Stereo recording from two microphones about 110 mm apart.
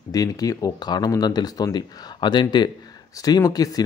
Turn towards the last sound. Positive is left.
turn(degrees=35)  # may be behind; listen again after turning